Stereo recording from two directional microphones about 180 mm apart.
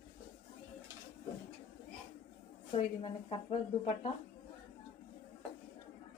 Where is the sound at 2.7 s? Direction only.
35° left (ahead or behind).